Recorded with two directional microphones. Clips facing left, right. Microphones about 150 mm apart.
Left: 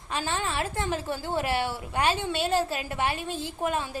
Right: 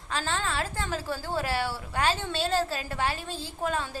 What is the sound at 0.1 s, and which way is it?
A woman's voice, 15° left (ahead or behind).